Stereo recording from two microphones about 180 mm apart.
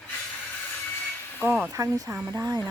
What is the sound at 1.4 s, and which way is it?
A woman's voice, 10° right (ahead or behind).